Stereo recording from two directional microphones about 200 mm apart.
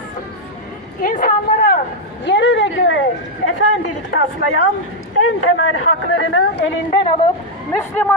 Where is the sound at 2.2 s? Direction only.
65° left (ahead or behind).